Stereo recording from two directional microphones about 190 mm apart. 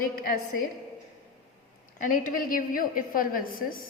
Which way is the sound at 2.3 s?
45° left (ahead or behind).